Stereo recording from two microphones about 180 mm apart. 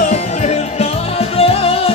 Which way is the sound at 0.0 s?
40° left (ahead or behind).